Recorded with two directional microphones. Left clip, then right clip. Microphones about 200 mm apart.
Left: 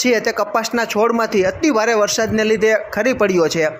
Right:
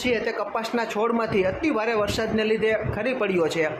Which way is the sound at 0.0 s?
30° left (ahead or behind).